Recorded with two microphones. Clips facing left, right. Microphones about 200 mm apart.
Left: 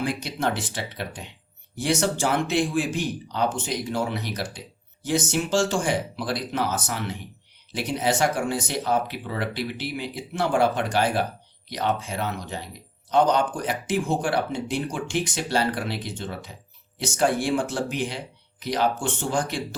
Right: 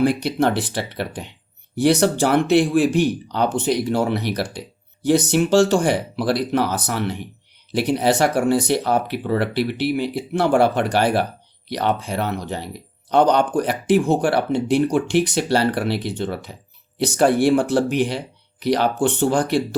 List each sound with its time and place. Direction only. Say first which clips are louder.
0.0 s speech: right 8 dB; 65° right (ahead or behind)